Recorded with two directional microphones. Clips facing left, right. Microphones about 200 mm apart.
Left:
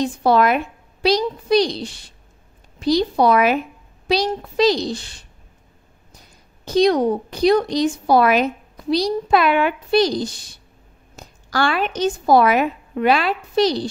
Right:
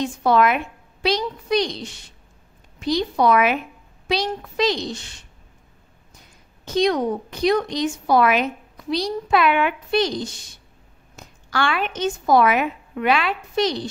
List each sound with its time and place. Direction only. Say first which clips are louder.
0.0 s a woman's voice: left 2 dB; 35° left (ahead or behind)
6.6 s a woman's voice: left 4 dB; 35° left (ahead or behind)